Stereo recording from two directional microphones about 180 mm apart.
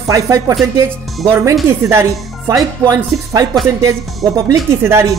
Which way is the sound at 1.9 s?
15° right (ahead or behind).